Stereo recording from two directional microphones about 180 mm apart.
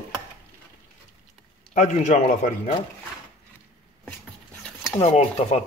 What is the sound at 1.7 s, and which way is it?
Speech, 45° left (ahead or behind).